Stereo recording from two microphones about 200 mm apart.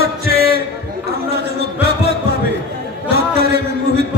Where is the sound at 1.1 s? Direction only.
55° right (ahead or behind).